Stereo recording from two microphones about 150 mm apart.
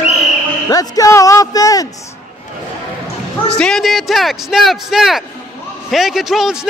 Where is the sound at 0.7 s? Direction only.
25° left (ahead or behind).